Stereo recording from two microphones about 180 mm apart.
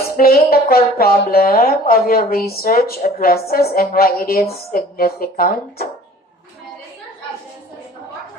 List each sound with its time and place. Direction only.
0.2 s a woman's voice: 55° left (ahead or behind)